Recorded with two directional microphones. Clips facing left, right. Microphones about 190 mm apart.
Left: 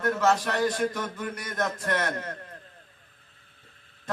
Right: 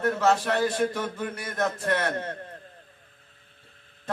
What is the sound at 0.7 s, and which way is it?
Speech, 30° right (ahead or behind).